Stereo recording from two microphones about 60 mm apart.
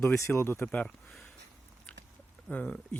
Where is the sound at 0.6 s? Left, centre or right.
Left.